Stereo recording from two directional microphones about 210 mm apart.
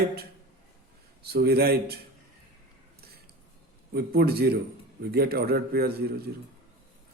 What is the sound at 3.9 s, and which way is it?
Speech, 50° right (ahead or behind).